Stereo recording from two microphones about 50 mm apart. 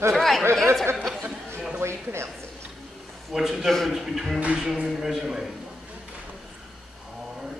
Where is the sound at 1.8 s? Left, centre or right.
Right.